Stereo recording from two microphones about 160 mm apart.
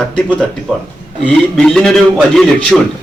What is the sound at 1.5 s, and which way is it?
A man's voice, 5° left (ahead or behind).